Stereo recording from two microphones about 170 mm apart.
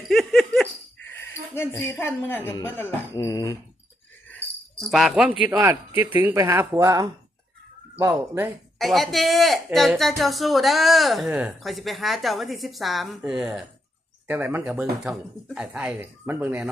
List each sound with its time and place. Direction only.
0.1 s laughter: centre (ahead or behind)
1.1 s speech: 15° left (ahead or behind)
4.8 s speech: centre (ahead or behind)
8.8 s speech: centre (ahead or behind)